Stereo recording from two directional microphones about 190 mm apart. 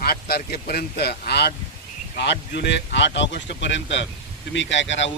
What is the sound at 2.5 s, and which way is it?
Speech, 65° left (ahead or behind).